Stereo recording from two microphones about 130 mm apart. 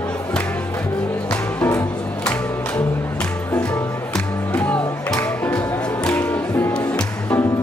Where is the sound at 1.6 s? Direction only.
20° left (ahead or behind).